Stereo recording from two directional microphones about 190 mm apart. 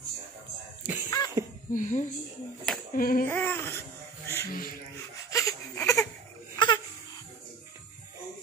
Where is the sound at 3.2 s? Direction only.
10° left (ahead or behind).